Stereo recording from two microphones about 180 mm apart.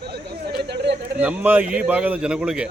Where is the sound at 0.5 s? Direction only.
70° right (ahead or behind).